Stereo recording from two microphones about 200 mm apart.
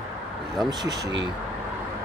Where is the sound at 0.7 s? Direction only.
20° right (ahead or behind).